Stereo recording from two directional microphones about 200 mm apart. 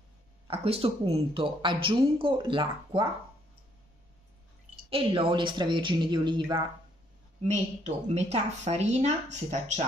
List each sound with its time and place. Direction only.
0.5 s speech: 30° right (ahead or behind)
4.8 s speech: 25° right (ahead or behind)
7.4 s a woman's voice: 35° right (ahead or behind)